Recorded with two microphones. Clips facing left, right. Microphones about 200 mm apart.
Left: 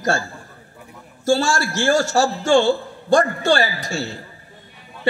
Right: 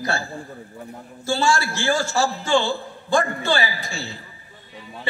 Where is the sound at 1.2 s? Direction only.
40° left (ahead or behind).